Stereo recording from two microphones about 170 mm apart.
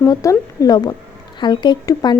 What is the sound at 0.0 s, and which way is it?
A woman's voice, 20° left (ahead or behind).